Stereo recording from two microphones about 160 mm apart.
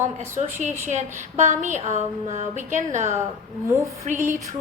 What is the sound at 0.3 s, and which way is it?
A woman's voice, 50° right (ahead or behind).